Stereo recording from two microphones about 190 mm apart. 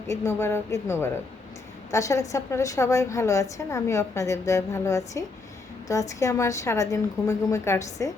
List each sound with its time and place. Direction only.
0.1 s a woman's voice: 15° left (ahead or behind)